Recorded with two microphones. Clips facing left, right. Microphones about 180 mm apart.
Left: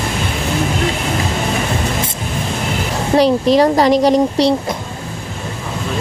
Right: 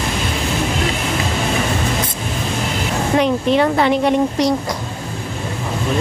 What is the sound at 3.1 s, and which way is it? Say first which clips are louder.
Speech: left 4 dB; 35° left (ahead or behind).